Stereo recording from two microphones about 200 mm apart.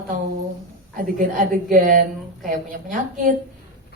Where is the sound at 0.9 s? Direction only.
40° right (ahead or behind).